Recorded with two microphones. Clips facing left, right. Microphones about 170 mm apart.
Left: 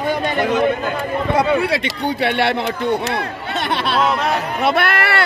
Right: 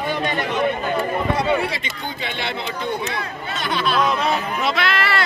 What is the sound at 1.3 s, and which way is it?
Speech, 75° left (ahead or behind).